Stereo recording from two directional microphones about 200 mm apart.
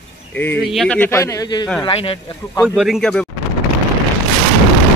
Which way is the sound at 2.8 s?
Centre (ahead or behind).